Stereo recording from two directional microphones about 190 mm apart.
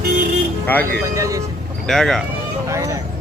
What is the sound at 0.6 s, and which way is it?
Speech, 10° left (ahead or behind).